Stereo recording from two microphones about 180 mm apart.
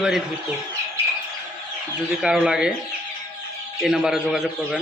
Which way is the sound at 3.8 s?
Centre (ahead or behind).